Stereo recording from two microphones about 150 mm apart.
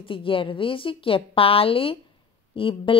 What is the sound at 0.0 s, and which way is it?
Speech, 35° left (ahead or behind).